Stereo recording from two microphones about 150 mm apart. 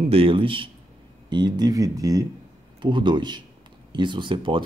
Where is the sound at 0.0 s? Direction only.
40° right (ahead or behind).